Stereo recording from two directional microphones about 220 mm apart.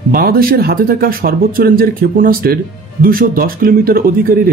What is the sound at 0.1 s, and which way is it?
Speech, 40° right (ahead or behind).